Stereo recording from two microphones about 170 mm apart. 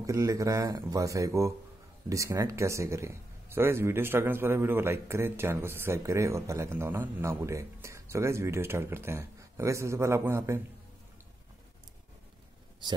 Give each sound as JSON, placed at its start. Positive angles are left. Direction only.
{"t": 0.0, "sound": "speech", "side_deg": -20}
{"t": 12.8, "sound": "speech", "side_deg": -25}